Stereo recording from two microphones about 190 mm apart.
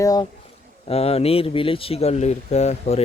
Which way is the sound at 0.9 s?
30° left (ahead or behind).